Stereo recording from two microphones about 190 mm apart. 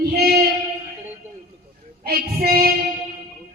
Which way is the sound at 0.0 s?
55° right (ahead or behind).